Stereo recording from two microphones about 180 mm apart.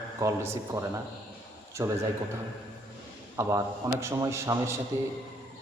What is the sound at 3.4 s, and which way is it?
A man's voice, 15° right (ahead or behind).